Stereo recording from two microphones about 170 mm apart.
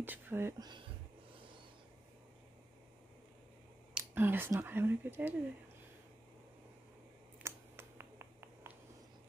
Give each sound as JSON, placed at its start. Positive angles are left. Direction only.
{"t": 0.0, "sound": "speech", "side_deg": -10}
{"t": 0.6, "sound": "speech", "side_deg": -25}
{"t": 3.9, "sound": "speech", "side_deg": -10}
{"t": 7.4, "sound": "a sound", "side_deg": -15}